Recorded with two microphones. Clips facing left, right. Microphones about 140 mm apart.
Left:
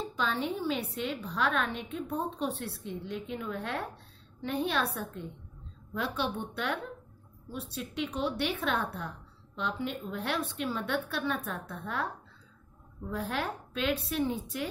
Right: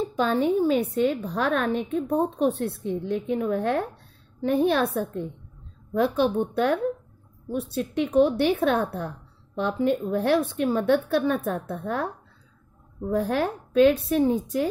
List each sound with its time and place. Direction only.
0.1 s a woman's voice: 45° right (ahead or behind)
5.9 s a woman's voice: 45° right (ahead or behind)
7.8 s a woman's voice: 45° right (ahead or behind)